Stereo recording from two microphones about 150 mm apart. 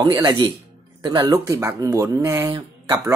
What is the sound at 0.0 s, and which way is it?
Speech, 30° right (ahead or behind).